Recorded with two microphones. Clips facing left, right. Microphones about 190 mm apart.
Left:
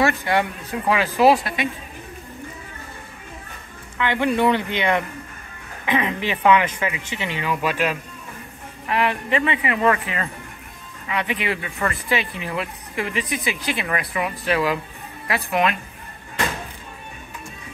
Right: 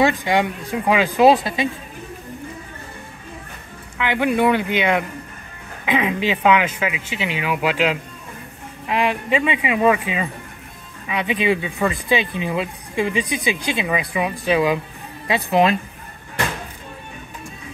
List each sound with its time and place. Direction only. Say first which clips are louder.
0.0 s speech: right 2 dB; 15° right (ahead or behind)
4.0 s speech: right 1 dB; 10° right (ahead or behind)
8.8 s speech: right 1 dB; 15° right (ahead or behind)